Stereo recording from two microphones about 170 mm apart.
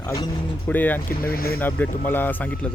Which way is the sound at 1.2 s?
60° left (ahead or behind).